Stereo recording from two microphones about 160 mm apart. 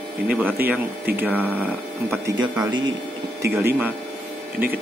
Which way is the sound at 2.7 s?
30° right (ahead or behind).